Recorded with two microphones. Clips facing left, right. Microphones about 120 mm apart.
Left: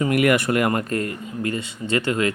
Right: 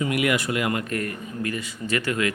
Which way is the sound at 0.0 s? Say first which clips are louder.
Left 5 dB; 50° left (ahead or behind).